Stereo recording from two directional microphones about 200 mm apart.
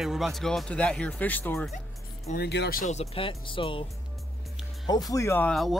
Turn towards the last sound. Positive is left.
turn(degrees=0)  # may be behind; listen again after turning